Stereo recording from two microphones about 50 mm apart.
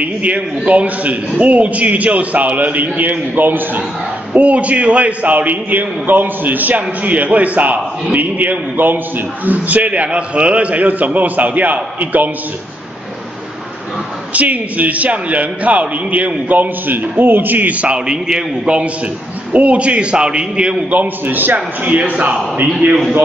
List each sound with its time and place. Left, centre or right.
0.0 s a man's voice: right
4.3 s a man's voice: right
14.3 s a man's voice: right; by 18.8 s centre
19.5 s a man's voice: right
20.9 s a man's voice: right
22.8 s a man's voice: right